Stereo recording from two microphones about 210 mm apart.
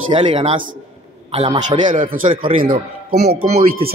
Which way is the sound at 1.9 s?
40° right (ahead or behind).